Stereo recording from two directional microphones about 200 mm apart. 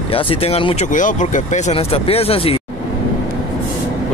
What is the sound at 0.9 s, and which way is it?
Speech, 40° left (ahead or behind).